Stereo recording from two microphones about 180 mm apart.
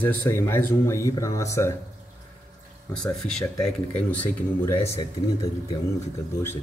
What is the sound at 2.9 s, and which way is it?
Speech, 5° left (ahead or behind).